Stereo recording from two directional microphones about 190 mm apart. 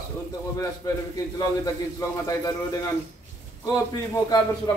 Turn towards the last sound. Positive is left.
turn(degrees=20)  # may be behind; listen again after turning